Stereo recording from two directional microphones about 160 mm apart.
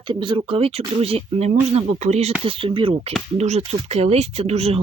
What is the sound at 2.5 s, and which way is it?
Speech, 30° right (ahead or behind).